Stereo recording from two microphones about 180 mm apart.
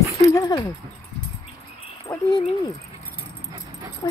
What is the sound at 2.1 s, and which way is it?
Speech, 25° left (ahead or behind).